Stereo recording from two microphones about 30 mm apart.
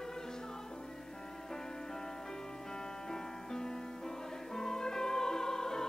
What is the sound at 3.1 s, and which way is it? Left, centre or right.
Music, centre.